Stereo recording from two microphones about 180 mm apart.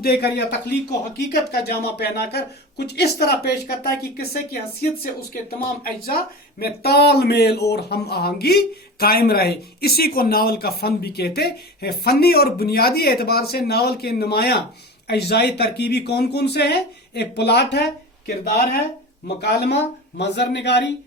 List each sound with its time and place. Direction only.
0.0 s speech: 60° left (ahead or behind)
5.3 s speech: 55° left (ahead or behind); by 20.9 s 70° left (ahead or behind)